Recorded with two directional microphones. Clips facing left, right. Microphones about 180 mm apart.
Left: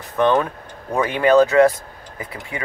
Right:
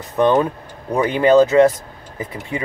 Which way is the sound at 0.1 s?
20° right (ahead or behind).